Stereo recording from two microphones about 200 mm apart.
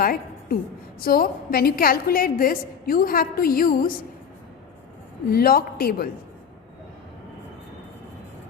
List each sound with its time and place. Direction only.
0.0 s a sound: 50° left (ahead or behind)
0.9 s a woman's voice: 45° left (ahead or behind)
5.3 s a woman's voice: 50° left (ahead or behind)